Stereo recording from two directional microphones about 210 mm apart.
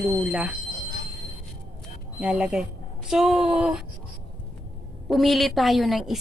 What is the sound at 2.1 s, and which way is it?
Speech, 5° right (ahead or behind).